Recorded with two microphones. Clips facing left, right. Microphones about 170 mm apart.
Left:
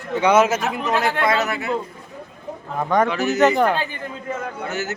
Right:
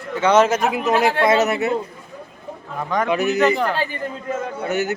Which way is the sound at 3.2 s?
40° left (ahead or behind).